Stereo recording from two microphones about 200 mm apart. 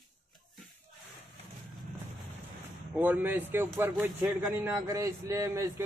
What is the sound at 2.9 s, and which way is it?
A man's voice, 10° right (ahead or behind).